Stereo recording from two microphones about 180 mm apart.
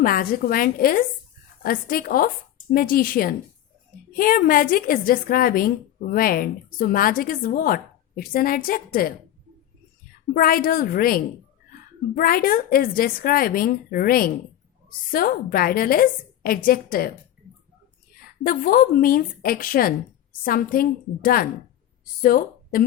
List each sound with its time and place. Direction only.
0.0 s a woman's voice: 55° left (ahead or behind)
10.3 s a woman's voice: 55° left (ahead or behind)
18.4 s a woman's voice: 50° left (ahead or behind)